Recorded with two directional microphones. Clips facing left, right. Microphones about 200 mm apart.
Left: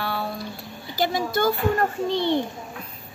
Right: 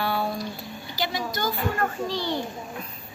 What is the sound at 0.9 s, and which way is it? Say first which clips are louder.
Speech: left 6 dB; 50° left (ahead or behind).